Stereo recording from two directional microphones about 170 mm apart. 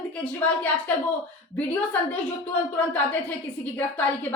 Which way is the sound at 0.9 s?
10° left (ahead or behind).